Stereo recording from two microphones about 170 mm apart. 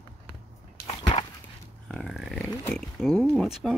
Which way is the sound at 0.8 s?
30° left (ahead or behind).